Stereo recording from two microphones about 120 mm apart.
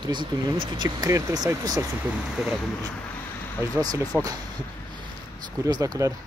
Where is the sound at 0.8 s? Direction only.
30° right (ahead or behind).